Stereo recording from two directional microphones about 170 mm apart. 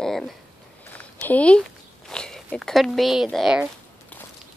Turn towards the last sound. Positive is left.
turn(degrees=-5)  # may be behind; listen again after turning